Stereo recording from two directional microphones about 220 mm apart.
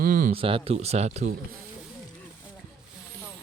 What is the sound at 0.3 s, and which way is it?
Speech, 25° right (ahead or behind).